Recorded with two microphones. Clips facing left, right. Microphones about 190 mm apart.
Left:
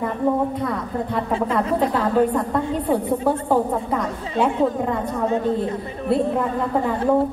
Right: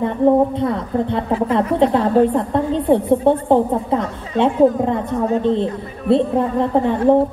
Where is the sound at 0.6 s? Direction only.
25° right (ahead or behind).